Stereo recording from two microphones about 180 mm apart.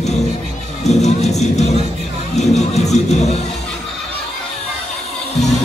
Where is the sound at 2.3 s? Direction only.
40° left (ahead or behind).